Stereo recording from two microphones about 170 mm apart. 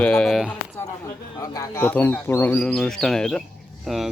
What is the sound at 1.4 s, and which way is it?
Speech, 20° left (ahead or behind).